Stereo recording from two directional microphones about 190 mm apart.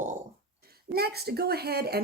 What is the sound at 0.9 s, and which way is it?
A woman's voice, 55° right (ahead or behind).